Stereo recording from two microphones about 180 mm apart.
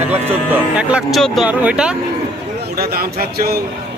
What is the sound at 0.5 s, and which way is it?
Speech, 5° right (ahead or behind).